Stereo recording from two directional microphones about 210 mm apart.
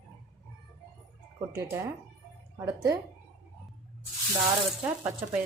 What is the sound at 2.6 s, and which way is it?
Speech, 20° right (ahead or behind).